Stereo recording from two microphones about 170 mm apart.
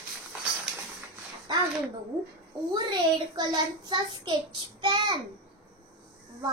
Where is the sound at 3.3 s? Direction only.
25° right (ahead or behind).